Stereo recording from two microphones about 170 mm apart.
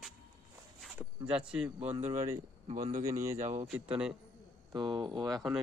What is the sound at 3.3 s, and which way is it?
Speech, 45° right (ahead or behind).